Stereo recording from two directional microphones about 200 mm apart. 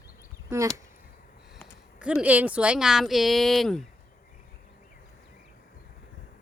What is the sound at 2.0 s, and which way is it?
Speech, 5° right (ahead or behind).